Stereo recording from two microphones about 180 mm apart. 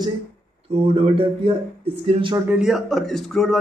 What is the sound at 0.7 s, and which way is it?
Speech, 30° right (ahead or behind).